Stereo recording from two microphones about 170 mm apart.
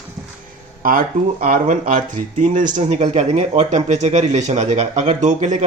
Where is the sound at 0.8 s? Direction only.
55° right (ahead or behind).